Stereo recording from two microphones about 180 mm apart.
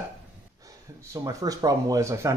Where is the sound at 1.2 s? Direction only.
20° right (ahead or behind).